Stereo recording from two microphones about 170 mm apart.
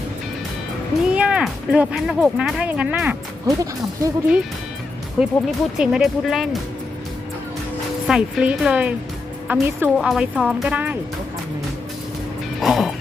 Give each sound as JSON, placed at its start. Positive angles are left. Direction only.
{"t": 1.1, "sound": "speech", "side_deg": -5}
{"t": 3.4, "sound": "speech", "side_deg": -20}
{"t": 5.2, "sound": "speech", "side_deg": -5}
{"t": 8.0, "sound": "speech", "side_deg": -5}
{"t": 12.5, "sound": "music", "side_deg": 0}